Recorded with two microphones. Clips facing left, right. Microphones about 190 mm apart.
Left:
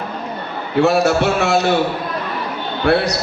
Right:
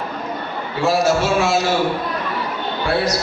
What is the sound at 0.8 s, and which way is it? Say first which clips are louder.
Speech: left 3 dB; 65° left (ahead or behind).